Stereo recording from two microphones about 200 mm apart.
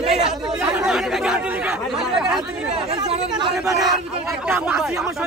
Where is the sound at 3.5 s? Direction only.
Centre (ahead or behind).